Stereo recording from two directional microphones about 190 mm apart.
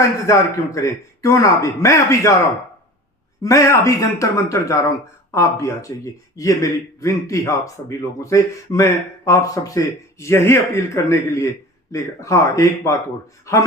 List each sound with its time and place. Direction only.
0.0 s speech: 15° left (ahead or behind)
3.4 s speech: 15° left (ahead or behind)